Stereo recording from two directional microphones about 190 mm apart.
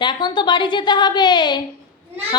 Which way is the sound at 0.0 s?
25° left (ahead or behind).